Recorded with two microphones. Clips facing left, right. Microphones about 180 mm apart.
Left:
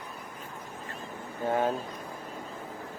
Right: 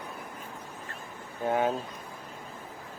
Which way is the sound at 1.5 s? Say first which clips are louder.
Right 1 dB; centre (ahead or behind).